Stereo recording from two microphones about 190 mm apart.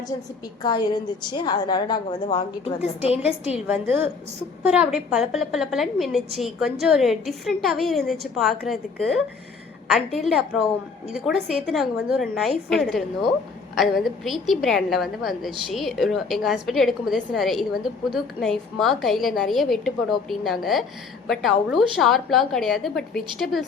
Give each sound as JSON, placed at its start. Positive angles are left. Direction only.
{"t": 0.6, "sound": "a woman's voice", "side_deg": 20}
{"t": 2.6, "sound": "a woman's voice", "side_deg": 30}
{"t": 3.5, "sound": "a woman's voice", "side_deg": -5}